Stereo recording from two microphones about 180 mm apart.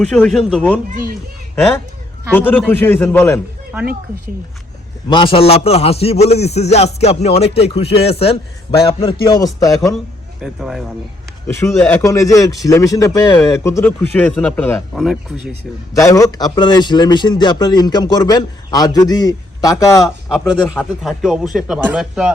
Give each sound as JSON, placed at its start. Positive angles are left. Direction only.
{"t": 0.0, "sound": "speech", "side_deg": 0}
{"t": 2.3, "sound": "speech", "side_deg": 10}
{"t": 5.0, "sound": "a man's voice", "side_deg": 30}
{"t": 10.4, "sound": "speech", "side_deg": 0}
{"t": 11.4, "sound": "speech", "side_deg": 10}
{"t": 16.0, "sound": "a man's voice", "side_deg": 20}
{"t": 21.0, "sound": "speech", "side_deg": 0}